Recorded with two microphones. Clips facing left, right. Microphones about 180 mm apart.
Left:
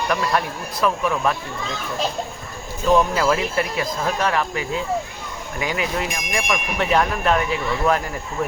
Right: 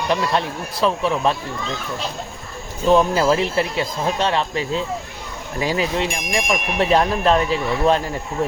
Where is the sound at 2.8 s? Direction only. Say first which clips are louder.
Right 2 dB; 30° right (ahead or behind).